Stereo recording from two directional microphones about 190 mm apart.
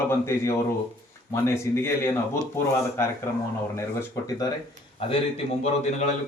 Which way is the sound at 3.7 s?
15° left (ahead or behind).